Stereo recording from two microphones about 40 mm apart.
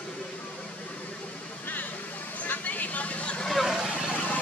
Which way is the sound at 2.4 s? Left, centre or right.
Left.